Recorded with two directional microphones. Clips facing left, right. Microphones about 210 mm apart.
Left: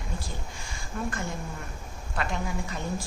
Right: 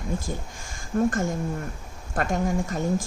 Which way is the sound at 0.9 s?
45° right (ahead or behind).